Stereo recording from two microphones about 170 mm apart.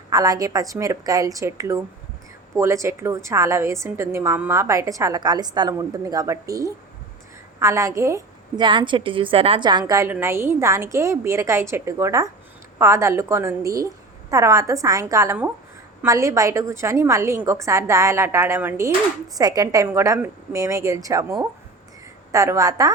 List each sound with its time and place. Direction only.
0.1 s a woman's voice: 20° right (ahead or behind)